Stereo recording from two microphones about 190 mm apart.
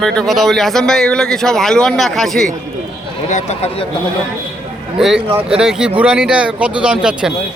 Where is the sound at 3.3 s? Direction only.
40° left (ahead or behind).